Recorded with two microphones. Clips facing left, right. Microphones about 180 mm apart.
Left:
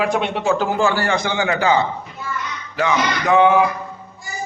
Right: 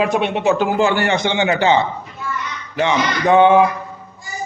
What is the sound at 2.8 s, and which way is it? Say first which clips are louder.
Speech: right 2 dB; 30° right (ahead or behind).